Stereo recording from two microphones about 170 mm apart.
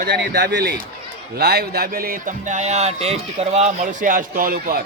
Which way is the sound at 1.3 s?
70° right (ahead or behind).